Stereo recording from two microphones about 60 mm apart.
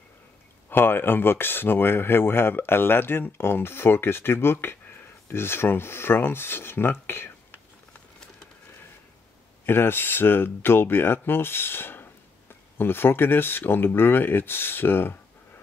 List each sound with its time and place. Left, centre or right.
0.7 s speech: left
9.7 s speech: left